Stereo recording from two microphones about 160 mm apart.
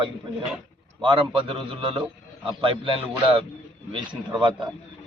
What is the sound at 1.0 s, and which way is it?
Speech, 30° right (ahead or behind).